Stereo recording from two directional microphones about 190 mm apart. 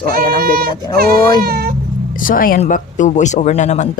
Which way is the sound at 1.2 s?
20° left (ahead or behind).